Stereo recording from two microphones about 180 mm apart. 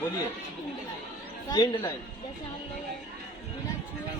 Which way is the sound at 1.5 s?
20° left (ahead or behind).